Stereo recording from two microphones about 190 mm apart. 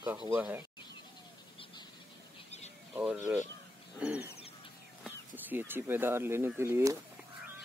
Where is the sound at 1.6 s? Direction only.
30° left (ahead or behind).